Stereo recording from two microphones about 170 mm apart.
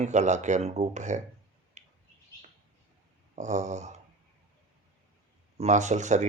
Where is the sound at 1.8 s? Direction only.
45° right (ahead or behind).